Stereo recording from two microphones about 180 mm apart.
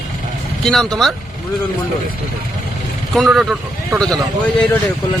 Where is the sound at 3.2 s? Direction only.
Centre (ahead or behind).